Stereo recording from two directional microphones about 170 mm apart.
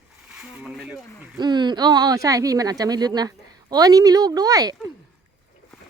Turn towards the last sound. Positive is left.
turn(degrees=-20)  # may be behind; listen again after turning